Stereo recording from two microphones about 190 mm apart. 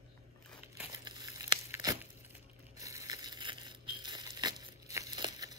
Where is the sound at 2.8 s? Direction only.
15° right (ahead or behind).